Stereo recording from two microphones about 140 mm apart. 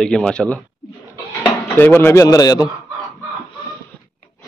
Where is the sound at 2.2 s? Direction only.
25° left (ahead or behind).